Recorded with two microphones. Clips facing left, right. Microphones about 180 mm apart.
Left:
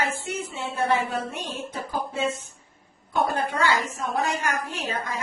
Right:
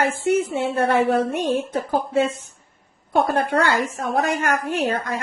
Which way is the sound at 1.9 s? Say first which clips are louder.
Right 7 dB; 65° right (ahead or behind).